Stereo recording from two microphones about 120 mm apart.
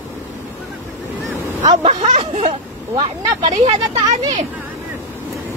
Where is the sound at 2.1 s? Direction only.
80° right.